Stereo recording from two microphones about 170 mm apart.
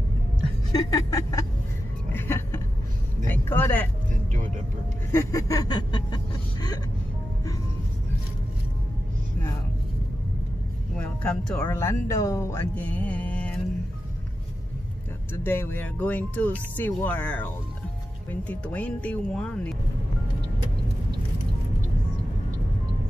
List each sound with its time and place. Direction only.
0.7 s chuckle: 20° left (ahead or behind)
2.1 s a sound: 15° left (ahead or behind)
3.3 s speech: 10° left (ahead or behind)
5.1 s a sound: 20° left (ahead or behind)
11.0 s speech: 5° left (ahead or behind)
15.3 s speech: 15° left (ahead or behind)